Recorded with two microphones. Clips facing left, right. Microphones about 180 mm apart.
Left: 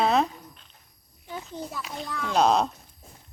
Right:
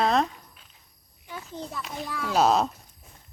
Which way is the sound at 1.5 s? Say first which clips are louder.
Right 1 dB; 5° left (ahead or behind).